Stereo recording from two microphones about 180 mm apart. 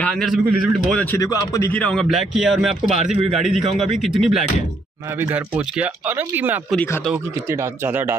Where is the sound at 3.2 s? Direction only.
Centre (ahead or behind).